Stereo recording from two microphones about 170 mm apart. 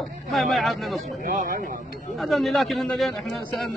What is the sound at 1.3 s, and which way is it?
Speech, 50° right (ahead or behind).